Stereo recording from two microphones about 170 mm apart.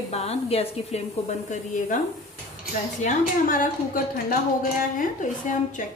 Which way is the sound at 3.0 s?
55° left (ahead or behind).